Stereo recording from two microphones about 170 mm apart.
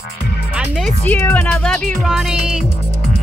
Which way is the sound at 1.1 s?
5° left (ahead or behind).